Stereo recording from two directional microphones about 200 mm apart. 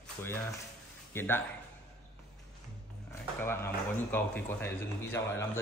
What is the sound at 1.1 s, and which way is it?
Speech, 10° left (ahead or behind).